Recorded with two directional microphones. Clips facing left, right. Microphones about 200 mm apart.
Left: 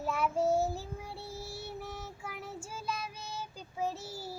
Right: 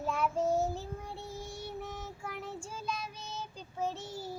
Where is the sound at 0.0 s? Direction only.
5° left (ahead or behind).